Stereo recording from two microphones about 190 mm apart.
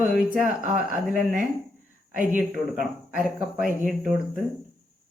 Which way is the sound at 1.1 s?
45° right (ahead or behind).